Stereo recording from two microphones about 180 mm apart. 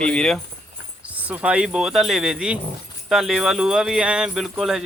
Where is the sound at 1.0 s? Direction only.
10° right (ahead or behind).